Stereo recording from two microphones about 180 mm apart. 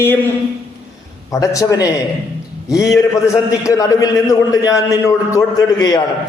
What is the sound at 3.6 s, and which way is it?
A man's voice, 20° left (ahead or behind).